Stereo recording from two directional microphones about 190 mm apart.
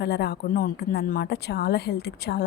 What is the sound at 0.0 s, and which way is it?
Speech, 60° left (ahead or behind).